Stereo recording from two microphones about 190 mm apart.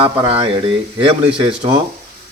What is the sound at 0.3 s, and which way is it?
Speech, 30° right (ahead or behind).